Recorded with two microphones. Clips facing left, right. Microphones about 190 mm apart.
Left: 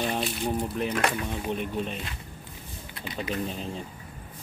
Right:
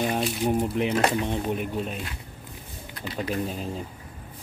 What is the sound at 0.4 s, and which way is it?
Speech, 20° right (ahead or behind).